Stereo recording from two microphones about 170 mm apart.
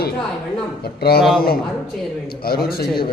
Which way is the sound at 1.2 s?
Centre (ahead or behind).